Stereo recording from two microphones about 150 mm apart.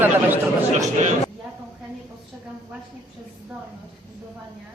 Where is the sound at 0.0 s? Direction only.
15° right (ahead or behind).